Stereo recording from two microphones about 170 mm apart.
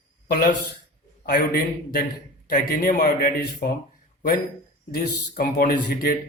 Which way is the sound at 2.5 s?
55° left (ahead or behind).